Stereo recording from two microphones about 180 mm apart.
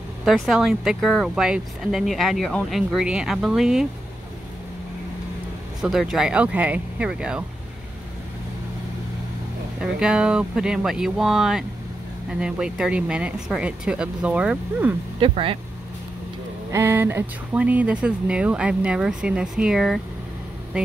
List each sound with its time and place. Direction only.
0.2 s speech: centre (ahead or behind)
5.8 s speech: centre (ahead or behind)
9.8 s speech: 5° right (ahead or behind)
15.1 s speech: 30° right (ahead or behind)
16.7 s speech: 10° right (ahead or behind)